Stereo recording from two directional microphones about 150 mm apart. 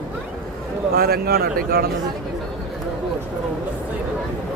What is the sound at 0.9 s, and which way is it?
Speech, 90° right.